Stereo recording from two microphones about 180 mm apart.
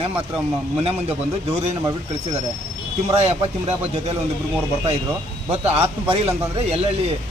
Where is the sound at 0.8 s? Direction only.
35° right (ahead or behind).